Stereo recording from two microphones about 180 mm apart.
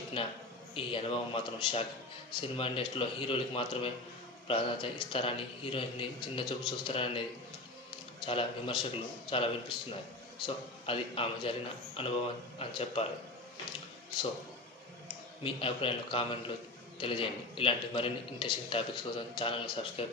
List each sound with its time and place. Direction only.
0.2 s a man's voice: 30° left (ahead or behind)
8.3 s a man's voice: 30° left (ahead or behind)
15.4 s a man's voice: 30° left (ahead or behind)